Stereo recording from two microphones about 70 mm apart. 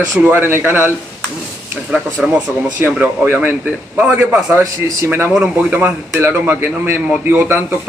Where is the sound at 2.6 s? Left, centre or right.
Right.